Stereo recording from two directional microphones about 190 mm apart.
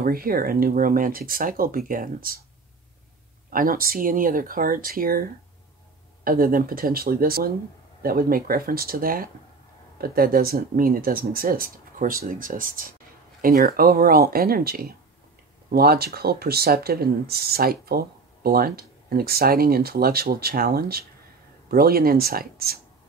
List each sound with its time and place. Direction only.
0.0 s speech: 50° right (ahead or behind)
3.4 s speech: 45° right (ahead or behind)